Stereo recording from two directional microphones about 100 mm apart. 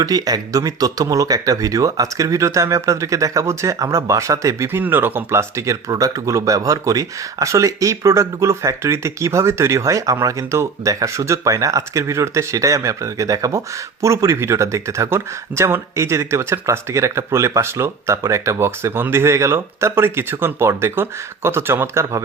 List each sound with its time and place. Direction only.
0.0 s speech: 40° right (ahead or behind)